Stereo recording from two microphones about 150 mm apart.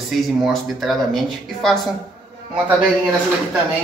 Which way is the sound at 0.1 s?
Centre (ahead or behind).